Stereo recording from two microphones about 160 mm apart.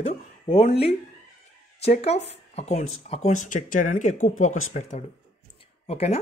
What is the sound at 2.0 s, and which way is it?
Speech, 40° left (ahead or behind).